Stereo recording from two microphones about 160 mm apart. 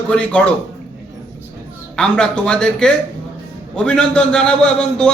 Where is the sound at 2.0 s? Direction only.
5° left (ahead or behind).